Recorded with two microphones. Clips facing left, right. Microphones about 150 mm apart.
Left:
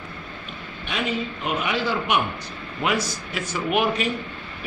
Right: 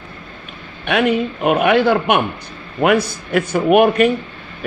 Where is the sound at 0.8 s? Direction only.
65° right (ahead or behind).